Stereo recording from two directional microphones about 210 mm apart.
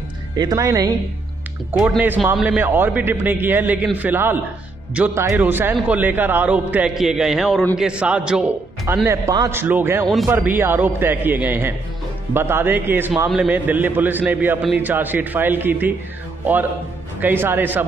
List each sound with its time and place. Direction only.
0.4 s a man's voice: 15° right (ahead or behind)
1.7 s a man's voice: 5° right (ahead or behind)
17.2 s a man's voice: 10° right (ahead or behind)